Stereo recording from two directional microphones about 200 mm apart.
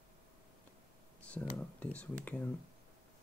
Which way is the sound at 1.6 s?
5° left (ahead or behind).